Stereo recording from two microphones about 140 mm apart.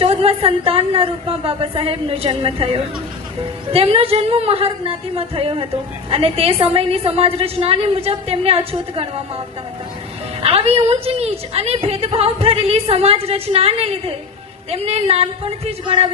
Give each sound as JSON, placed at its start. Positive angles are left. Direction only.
{"t": 0.0, "sound": "a woman's voice", "side_deg": -45}
{"t": 10.4, "sound": "a woman's voice", "side_deg": -45}